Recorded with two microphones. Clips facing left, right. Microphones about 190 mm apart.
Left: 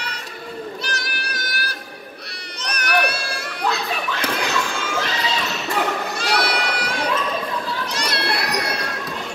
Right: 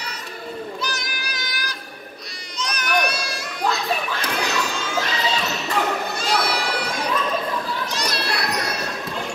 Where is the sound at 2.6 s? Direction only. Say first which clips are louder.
Left 1 dB; 60° left (ahead or behind).